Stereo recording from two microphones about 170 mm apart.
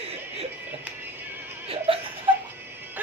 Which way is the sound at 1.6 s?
35° right (ahead or behind).